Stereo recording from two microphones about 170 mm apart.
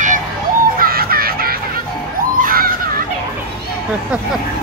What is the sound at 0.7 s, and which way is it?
Music, 60° right (ahead or behind).